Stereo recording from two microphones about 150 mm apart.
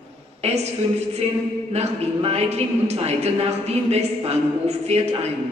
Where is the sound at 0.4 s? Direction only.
45° right (ahead or behind).